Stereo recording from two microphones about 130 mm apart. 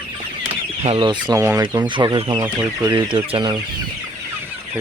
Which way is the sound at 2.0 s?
40° right (ahead or behind).